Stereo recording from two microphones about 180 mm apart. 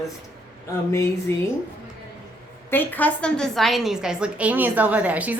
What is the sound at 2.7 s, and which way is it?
A woman's voice, 10° left (ahead or behind).